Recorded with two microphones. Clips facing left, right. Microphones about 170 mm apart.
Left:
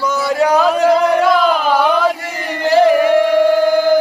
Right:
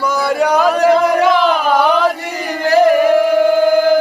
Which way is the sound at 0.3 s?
Centre (ahead or behind).